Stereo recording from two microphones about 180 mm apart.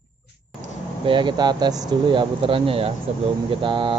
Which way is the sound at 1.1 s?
25° right (ahead or behind).